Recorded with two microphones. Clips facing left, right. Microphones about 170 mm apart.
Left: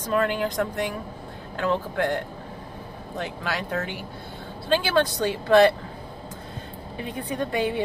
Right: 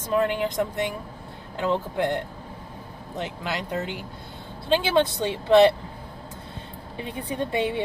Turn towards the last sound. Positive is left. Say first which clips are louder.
# even
turn(degrees=-25)  # may be behind; listen again after turning